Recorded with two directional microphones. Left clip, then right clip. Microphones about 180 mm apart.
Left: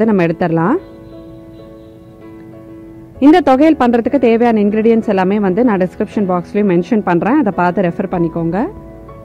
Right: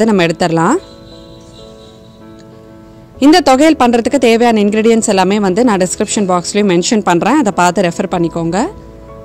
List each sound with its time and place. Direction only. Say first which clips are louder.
0.0 s speech: right 2 dB; 20° right (ahead or behind)
3.2 s speech: right 1 dB; 20° right (ahead or behind)